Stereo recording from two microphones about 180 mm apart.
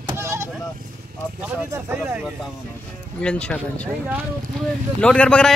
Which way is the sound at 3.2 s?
5° left (ahead or behind).